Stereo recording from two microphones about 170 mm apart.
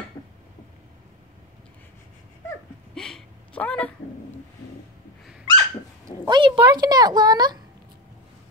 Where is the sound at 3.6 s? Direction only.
5° left (ahead or behind).